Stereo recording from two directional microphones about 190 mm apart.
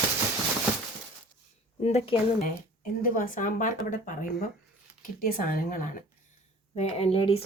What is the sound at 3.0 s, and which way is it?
Speech, 45° left (ahead or behind).